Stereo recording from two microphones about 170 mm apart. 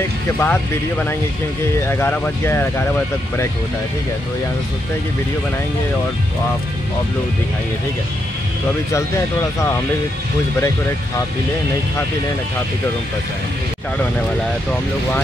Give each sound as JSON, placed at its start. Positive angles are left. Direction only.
{"t": 0.4, "sound": "speech", "side_deg": 10}
{"t": 8.9, "sound": "speech", "side_deg": 20}